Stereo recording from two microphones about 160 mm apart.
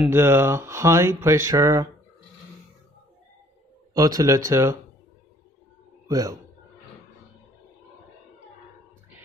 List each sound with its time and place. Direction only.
0.1 s speech: 15° right (ahead or behind)
3.9 s speech: 20° right (ahead or behind)
6.0 s a man's voice: 20° right (ahead or behind)